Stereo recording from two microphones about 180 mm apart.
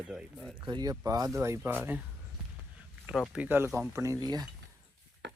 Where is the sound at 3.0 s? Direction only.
5° right (ahead or behind); by 4.5 s 20° right (ahead or behind).